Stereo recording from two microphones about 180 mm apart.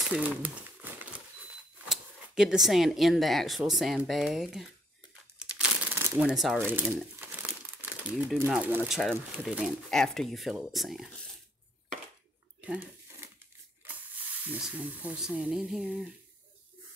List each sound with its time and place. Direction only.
0.1 s crumpling: 5° right (ahead or behind)
1.9 s speech: 5° right (ahead or behind)
5.4 s shuffling cards: 10° right (ahead or behind)
6.6 s speech: 10° right (ahead or behind)
7.0 s crumpling: 5° right (ahead or behind)
8.4 s speech: 10° right (ahead or behind)
12.5 s a sound: 10° right (ahead or behind)
13.8 s speech: 10° right (ahead or behind)